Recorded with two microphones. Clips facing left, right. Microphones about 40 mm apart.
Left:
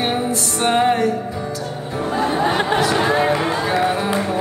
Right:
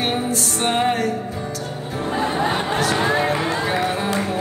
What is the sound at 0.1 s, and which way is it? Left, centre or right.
Music, centre.